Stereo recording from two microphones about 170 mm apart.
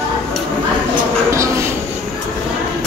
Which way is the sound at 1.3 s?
15° right (ahead or behind).